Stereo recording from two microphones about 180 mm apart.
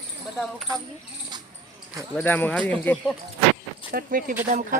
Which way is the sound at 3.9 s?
55° right (ahead or behind).